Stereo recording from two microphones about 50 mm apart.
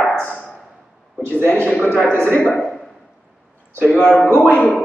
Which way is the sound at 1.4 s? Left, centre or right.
Left.